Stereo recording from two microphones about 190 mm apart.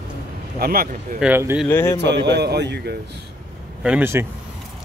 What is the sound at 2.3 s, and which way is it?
Speech, 60° right (ahead or behind).